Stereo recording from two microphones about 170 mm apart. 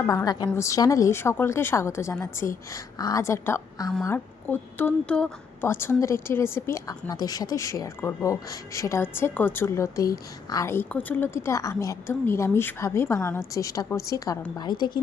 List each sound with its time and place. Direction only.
0.3 s a woman's voice: 25° left (ahead or behind)